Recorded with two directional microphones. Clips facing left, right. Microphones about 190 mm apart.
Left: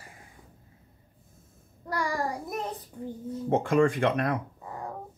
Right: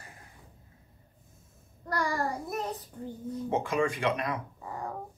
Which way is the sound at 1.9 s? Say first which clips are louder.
Left 1 dB; 10° left (ahead or behind).